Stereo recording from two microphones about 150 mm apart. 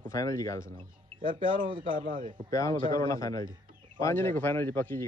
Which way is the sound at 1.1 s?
90° left.